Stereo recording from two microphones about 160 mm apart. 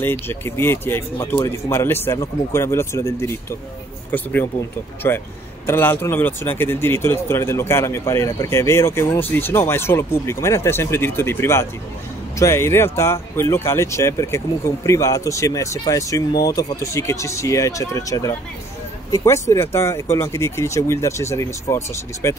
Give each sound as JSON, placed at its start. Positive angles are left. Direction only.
{"t": 0.0, "sound": "speech", "side_deg": 15}